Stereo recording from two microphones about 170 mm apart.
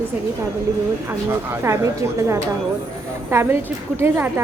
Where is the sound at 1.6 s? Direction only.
15° right (ahead or behind).